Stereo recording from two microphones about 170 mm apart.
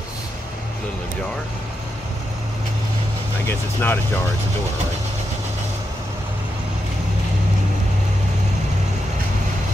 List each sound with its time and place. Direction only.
3.4 s speech: 10° left (ahead or behind)